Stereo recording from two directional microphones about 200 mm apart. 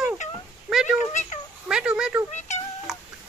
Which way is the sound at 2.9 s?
Centre (ahead or behind).